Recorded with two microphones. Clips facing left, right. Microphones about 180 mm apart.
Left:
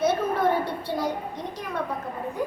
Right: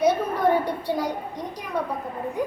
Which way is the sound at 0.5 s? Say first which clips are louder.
Right 3 dB; 15° right (ahead or behind).